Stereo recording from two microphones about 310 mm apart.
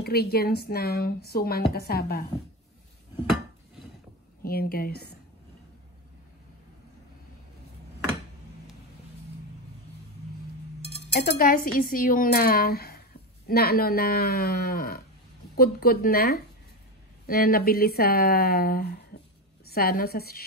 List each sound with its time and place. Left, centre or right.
0.0 s speech: left
4.4 s a woman's voice: left
11.2 s a woman's voice: left